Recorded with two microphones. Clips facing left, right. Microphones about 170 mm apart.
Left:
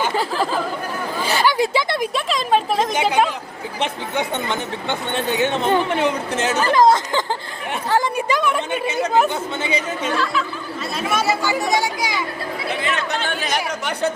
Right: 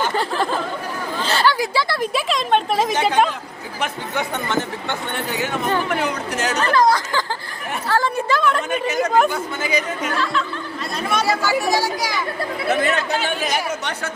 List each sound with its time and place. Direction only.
0.0 s chatter: centre (ahead or behind)
1.2 s chatter: 15° left (ahead or behind)
1.5 s speech: 25° left (ahead or behind)
2.1 s a woman's voice: centre (ahead or behind)
3.8 s a woman's voice: 20° left (ahead or behind)
9.3 s speech: 25° left (ahead or behind)
10.9 s speech: 5° left (ahead or behind)
11.4 s a woman's voice: 20° left (ahead or behind)
12.6 s speech: 45° right (ahead or behind)
13.1 s speech: 5° right (ahead or behind)